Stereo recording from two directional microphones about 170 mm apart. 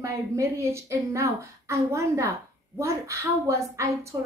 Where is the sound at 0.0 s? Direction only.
15° right (ahead or behind).